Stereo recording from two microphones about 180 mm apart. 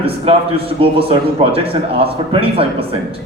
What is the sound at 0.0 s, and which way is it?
A man's voice, 30° right (ahead or behind).